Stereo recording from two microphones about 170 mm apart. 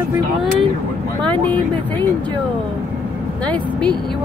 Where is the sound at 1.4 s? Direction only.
10° left (ahead or behind).